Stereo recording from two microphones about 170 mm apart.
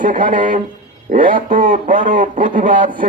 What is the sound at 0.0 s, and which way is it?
A man's voice, 50° right (ahead or behind).